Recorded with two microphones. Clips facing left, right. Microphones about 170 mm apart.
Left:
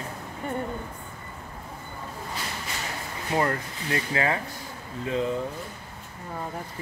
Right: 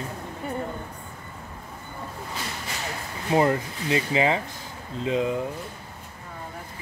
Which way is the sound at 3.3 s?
20° right (ahead or behind).